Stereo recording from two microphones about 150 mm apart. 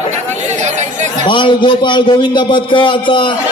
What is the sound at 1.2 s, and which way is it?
A man's voice, 35° left (ahead or behind).